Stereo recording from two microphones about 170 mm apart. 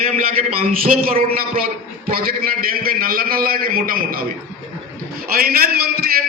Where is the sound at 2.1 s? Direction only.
60° right (ahead or behind).